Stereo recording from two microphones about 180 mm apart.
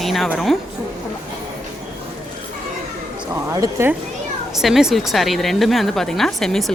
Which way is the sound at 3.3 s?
15° right (ahead or behind).